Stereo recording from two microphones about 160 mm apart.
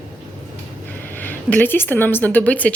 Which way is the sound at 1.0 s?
10° left (ahead or behind).